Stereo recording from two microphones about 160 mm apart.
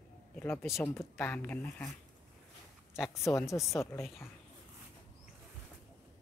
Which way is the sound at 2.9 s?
5° right (ahead or behind).